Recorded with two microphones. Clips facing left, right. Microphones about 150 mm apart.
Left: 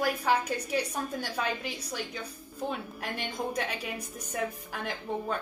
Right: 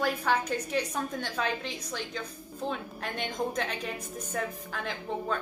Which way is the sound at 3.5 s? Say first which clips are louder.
Even; 10° left (ahead or behind).